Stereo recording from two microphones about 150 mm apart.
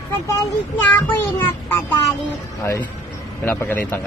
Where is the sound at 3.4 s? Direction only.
15° left (ahead or behind).